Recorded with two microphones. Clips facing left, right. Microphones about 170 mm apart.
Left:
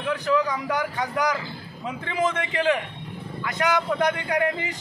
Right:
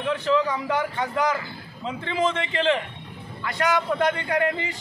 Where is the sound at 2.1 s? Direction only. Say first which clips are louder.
Even; 15° left (ahead or behind).